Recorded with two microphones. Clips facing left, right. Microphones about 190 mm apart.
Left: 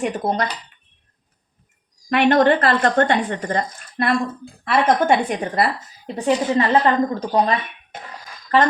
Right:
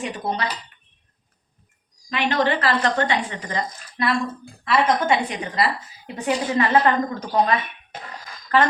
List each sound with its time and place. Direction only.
0.0 s speech: 50° left (ahead or behind)
2.0 s speech: 60° left (ahead or behind)
6.1 s a woman's voice: 35° left (ahead or behind)